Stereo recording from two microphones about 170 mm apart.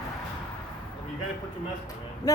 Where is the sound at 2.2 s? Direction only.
20° left (ahead or behind).